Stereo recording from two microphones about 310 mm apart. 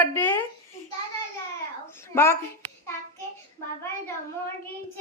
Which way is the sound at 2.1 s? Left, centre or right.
Centre.